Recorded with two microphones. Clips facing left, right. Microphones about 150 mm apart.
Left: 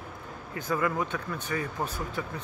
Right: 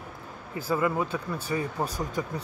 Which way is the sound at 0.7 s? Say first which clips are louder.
Right 2 dB; 30° right (ahead or behind).